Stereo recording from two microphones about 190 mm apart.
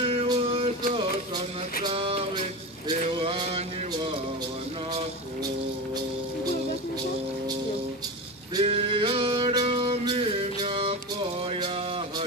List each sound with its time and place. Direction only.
0.2 s music: 25° right (ahead or behind)
3.2 s mantra: 25° right (ahead or behind)
8.5 s male singing: 30° right (ahead or behind)
10.6 s music: 30° right (ahead or behind)